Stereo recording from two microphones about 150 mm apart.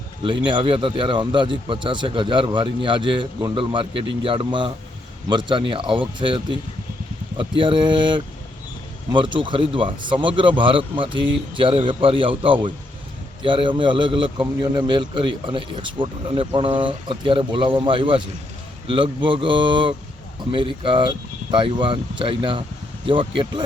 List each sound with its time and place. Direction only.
0.3 s a man's voice: 30° right (ahead or behind)